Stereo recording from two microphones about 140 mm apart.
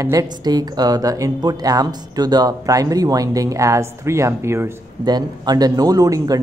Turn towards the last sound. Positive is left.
turn(degrees=-25)  # may be behind; listen again after turning